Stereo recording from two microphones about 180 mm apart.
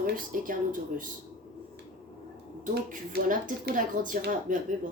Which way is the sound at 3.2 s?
45° right (ahead or behind).